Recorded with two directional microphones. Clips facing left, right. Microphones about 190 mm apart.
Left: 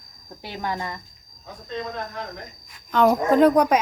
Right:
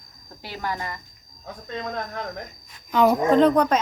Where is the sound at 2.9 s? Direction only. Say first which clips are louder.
Even; 5° right (ahead or behind).